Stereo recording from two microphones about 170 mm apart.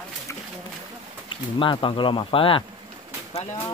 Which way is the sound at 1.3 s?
30° left (ahead or behind).